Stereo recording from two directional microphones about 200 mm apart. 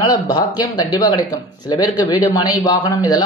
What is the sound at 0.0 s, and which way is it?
Speech, 20° left (ahead or behind).